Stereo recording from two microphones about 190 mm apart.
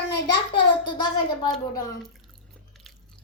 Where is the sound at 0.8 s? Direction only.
25° left (ahead or behind).